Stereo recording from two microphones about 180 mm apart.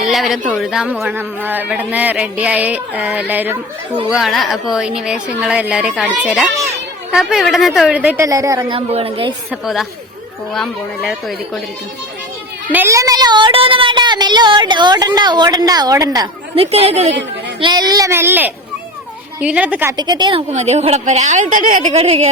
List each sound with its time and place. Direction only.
0.1 s a woman's voice: centre (ahead or behind); by 8.8 s 20° right (ahead or behind)
8.9 s a woman's voice: 30° right (ahead or behind)
9.5 s a woman's voice: centre (ahead or behind)
12.7 s speech: 15° right (ahead or behind)
16.7 s a woman's voice: 35° right (ahead or behind)
17.6 s speech: 25° right (ahead or behind)
20.0 s speech: 25° right (ahead or behind)
20.5 s a woman's voice: 40° right (ahead or behind)